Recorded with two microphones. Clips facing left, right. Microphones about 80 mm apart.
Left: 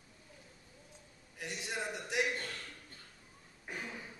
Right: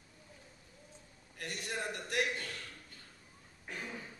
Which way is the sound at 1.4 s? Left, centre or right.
Centre.